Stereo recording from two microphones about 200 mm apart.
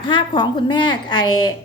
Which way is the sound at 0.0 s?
25° left (ahead or behind).